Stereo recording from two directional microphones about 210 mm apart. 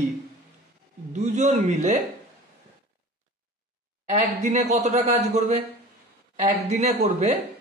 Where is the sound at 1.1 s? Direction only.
35° right (ahead or behind).